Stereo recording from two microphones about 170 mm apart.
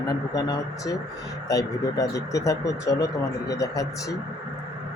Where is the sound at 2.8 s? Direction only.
90° left.